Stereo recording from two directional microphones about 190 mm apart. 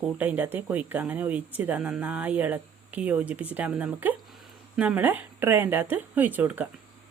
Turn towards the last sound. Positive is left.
turn(degrees=-10)  # may be behind; listen again after turning